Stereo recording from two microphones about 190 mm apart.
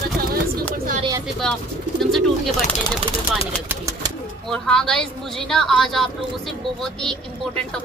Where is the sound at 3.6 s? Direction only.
15° right (ahead or behind).